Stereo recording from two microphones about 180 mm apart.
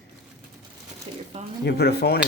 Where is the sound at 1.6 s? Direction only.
65° left (ahead or behind).